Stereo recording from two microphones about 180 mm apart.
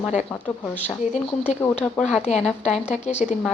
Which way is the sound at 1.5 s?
40° left (ahead or behind).